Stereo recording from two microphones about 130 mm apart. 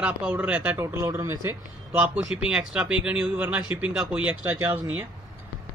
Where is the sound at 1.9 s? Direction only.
10° right (ahead or behind).